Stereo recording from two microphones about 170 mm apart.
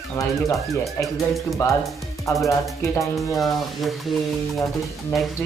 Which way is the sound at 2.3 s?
Centre (ahead or behind).